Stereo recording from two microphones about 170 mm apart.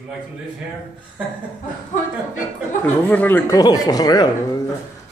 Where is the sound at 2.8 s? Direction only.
10° left (ahead or behind).